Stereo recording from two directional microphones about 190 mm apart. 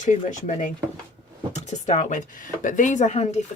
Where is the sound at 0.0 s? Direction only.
40° left (ahead or behind).